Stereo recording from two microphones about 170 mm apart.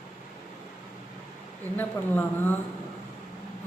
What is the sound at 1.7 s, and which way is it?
Speech, 10° left (ahead or behind).